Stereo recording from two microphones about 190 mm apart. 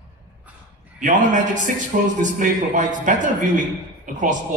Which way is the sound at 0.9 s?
40° right (ahead or behind).